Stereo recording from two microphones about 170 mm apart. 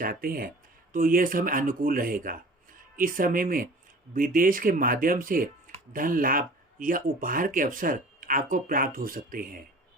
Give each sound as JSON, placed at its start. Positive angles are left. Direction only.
{"t": 0.0, "sound": "speech", "side_deg": -60}